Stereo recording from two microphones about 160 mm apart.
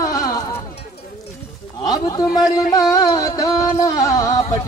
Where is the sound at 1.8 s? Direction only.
25° left (ahead or behind).